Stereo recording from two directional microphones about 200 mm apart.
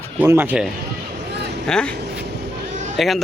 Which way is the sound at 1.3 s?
55° right (ahead or behind).